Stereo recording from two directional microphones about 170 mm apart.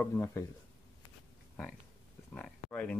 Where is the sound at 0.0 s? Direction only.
15° left (ahead or behind).